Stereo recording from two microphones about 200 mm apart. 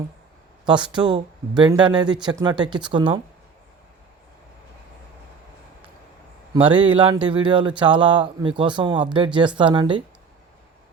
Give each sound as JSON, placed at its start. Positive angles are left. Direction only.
{"t": 0.6, "sound": "speech", "side_deg": -20}
{"t": 6.5, "sound": "speech", "side_deg": -25}